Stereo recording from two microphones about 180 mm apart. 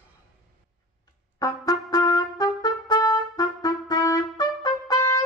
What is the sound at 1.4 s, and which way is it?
Trumpet, 20° left (ahead or behind).